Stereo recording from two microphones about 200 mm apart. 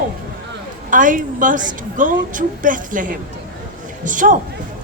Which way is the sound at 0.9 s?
40° right (ahead or behind).